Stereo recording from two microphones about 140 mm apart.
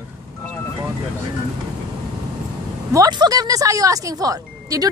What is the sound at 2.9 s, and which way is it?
Speech, 25° right (ahead or behind).